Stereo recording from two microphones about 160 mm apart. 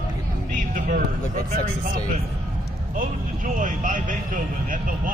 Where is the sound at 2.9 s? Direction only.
55° right (ahead or behind).